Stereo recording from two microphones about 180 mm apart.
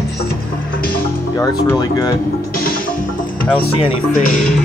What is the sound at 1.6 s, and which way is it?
Speech, 20° left (ahead or behind).